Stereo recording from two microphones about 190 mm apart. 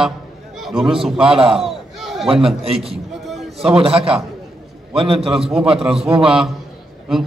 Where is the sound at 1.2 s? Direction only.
30° right (ahead or behind).